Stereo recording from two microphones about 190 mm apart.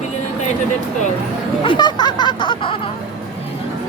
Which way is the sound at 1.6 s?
25° left (ahead or behind).